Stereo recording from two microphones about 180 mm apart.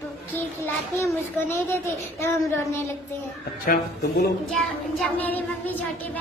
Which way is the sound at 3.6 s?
55° left (ahead or behind).